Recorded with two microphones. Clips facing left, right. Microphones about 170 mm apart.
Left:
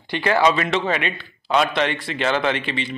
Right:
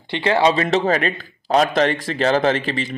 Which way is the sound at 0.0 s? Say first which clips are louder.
Right 1 dB; 25° right (ahead or behind).